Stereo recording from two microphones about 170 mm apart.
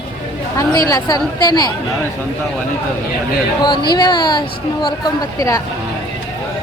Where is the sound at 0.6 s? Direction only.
20° left (ahead or behind).